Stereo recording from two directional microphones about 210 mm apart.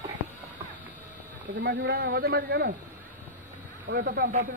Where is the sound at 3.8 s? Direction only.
45° right (ahead or behind).